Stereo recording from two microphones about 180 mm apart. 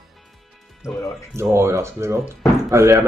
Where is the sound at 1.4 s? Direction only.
15° right (ahead or behind).